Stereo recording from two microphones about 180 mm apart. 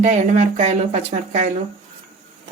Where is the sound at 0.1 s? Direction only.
40° right (ahead or behind).